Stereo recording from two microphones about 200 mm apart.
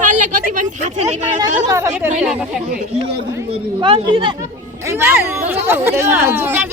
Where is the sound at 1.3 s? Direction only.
15° right (ahead or behind).